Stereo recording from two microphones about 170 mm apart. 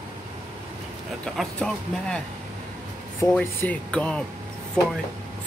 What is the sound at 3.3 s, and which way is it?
Speech, 10° left (ahead or behind).